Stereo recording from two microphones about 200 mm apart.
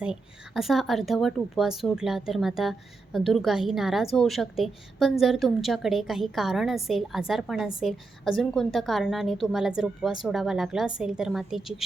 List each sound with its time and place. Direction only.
0.0 s a woman's voice: 5° right (ahead or behind)